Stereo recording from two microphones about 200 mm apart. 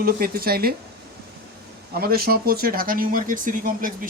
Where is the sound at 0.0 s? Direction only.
50° right (ahead or behind).